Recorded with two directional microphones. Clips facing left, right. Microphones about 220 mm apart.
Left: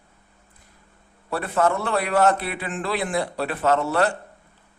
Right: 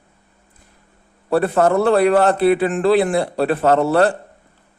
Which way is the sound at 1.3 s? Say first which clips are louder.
Right 7 dB; 35° right (ahead or behind).